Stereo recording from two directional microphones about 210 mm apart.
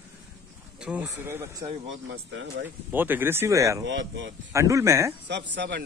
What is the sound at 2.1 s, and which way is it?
Speech, 65° right (ahead or behind).